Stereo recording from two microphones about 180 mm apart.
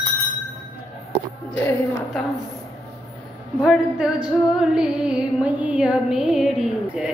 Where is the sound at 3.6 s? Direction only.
5° right (ahead or behind).